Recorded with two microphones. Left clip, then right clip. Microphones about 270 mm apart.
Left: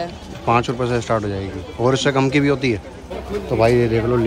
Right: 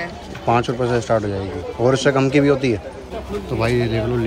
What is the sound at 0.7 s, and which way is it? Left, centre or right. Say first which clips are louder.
A man's voice: right 2 dB; centre.